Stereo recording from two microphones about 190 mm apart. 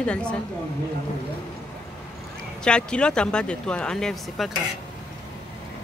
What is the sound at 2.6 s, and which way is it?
Speech, 5° left (ahead or behind).